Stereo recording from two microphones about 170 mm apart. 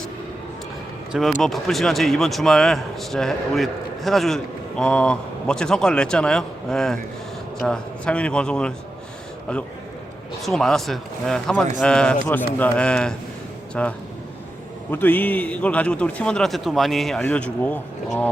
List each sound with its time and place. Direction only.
1.3 s a man's voice: centre (ahead or behind)
10.4 s a man's voice: centre (ahead or behind)